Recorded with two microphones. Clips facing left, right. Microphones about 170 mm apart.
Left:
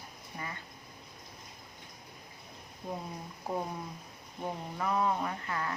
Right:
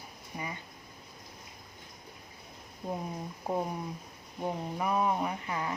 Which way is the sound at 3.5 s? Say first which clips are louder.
Right 3 dB; 15° right (ahead or behind).